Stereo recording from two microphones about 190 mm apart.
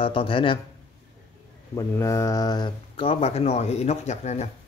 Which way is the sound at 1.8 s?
15° left (ahead or behind).